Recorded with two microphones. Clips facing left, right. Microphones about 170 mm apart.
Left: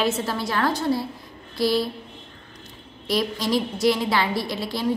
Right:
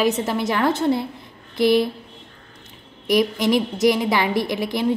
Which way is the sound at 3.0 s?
15° right (ahead or behind).